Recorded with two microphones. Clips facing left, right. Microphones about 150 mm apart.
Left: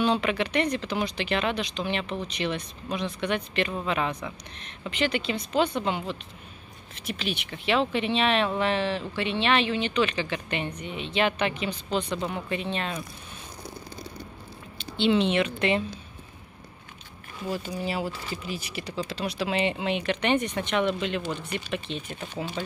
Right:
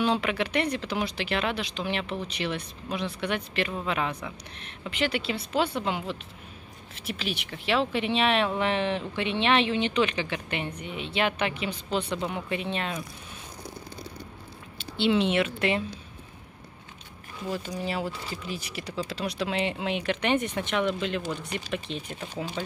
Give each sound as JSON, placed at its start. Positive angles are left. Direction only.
{"t": 0.0, "sound": "speech", "side_deg": -5}
{"t": 14.8, "sound": "speech", "side_deg": -5}
{"t": 17.5, "sound": "speech", "side_deg": 5}